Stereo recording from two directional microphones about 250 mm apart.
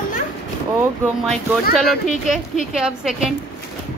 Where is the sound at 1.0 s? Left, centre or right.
Centre.